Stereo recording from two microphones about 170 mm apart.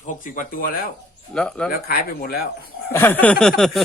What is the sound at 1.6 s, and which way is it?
Speech, 60° left (ahead or behind).